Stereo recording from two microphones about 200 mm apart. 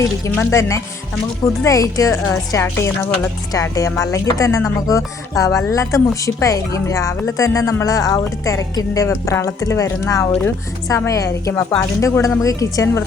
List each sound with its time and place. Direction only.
0.0 s speech: 15° left (ahead or behind)